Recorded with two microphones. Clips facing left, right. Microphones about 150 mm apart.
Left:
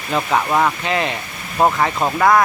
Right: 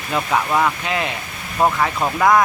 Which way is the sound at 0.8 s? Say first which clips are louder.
Left 3 dB; 5° right (ahead or behind).